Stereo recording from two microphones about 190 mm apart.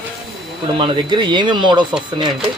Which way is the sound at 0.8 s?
25° right (ahead or behind).